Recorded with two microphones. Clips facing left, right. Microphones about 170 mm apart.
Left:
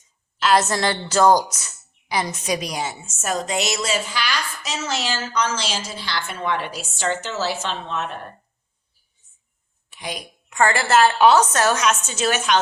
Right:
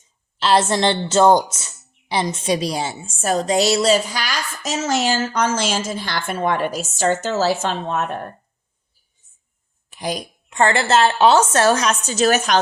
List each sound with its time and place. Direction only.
0.3 s a woman's voice: 30° right (ahead or behind); by 8.0 s 45° right (ahead or behind)
9.9 s a woman's voice: 35° right (ahead or behind)